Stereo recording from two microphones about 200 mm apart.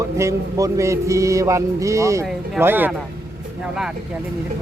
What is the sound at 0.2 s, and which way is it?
Mantra, 15° right (ahead or behind).